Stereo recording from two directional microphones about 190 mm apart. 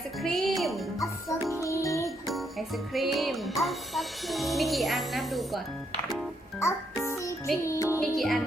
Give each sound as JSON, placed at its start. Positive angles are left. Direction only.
{"t": 0.2, "sound": "music", "side_deg": 0}
{"t": 0.9, "sound": "music", "side_deg": 15}
{"t": 2.3, "sound": "music", "side_deg": 0}
{"t": 6.6, "sound": "music", "side_deg": 15}
{"t": 8.0, "sound": "music", "side_deg": 0}